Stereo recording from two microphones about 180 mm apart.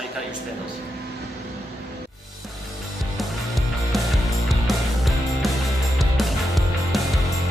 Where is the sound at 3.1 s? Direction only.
Centre (ahead or behind).